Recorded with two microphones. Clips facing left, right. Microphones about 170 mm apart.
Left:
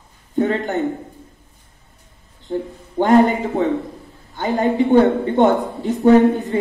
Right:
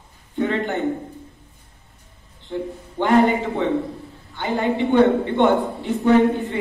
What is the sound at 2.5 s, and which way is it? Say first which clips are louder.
A man's voice: left 4 dB; 40° left (ahead or behind).